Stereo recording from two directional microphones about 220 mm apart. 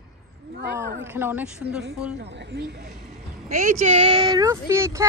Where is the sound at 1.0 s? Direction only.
10° right (ahead or behind).